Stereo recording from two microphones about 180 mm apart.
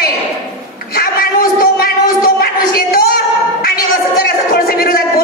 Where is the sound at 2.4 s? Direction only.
60° left (ahead or behind).